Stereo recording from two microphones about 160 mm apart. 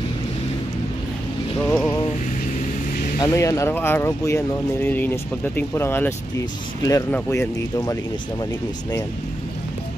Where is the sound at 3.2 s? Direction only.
20° left (ahead or behind).